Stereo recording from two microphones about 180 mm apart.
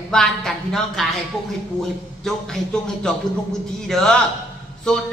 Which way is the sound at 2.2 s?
5° left (ahead or behind).